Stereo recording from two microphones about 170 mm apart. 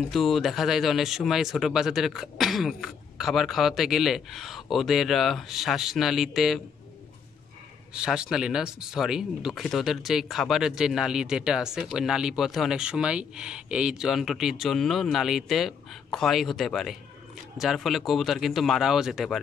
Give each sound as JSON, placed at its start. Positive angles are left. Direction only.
{"t": 0.1, "sound": "speech", "side_deg": 0}
{"t": 7.9, "sound": "speech", "side_deg": -5}